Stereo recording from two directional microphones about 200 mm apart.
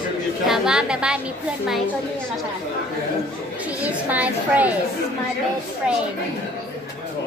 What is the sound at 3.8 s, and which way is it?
Speech, 10° right (ahead or behind).